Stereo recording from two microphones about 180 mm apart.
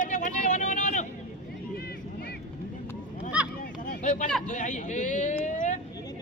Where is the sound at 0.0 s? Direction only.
45° left (ahead or behind).